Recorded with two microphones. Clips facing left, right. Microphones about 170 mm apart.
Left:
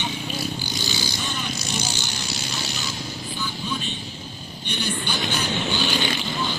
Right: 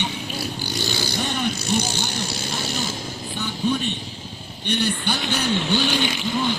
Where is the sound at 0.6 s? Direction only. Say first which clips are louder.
Right 3 dB; 60° right (ahead or behind).